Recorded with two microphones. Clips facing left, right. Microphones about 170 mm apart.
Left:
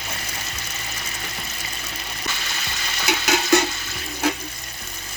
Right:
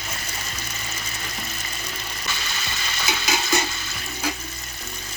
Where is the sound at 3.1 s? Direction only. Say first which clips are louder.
Left 6 dB; 65° left (ahead or behind).